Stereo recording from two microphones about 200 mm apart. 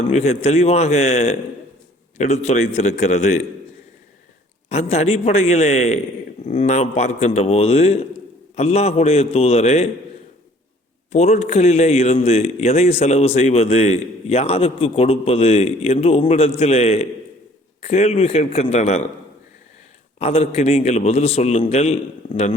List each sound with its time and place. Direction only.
0.1 s speech: 30° left (ahead or behind)
4.7 s speech: 35° left (ahead or behind)
11.1 s speech: 35° left (ahead or behind)
20.1 s speech: 30° left (ahead or behind)